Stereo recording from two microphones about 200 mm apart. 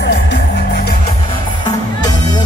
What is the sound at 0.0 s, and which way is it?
Music, 60° left (ahead or behind).